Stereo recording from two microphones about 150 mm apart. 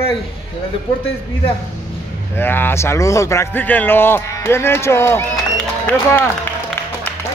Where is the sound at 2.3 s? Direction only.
15° left (ahead or behind).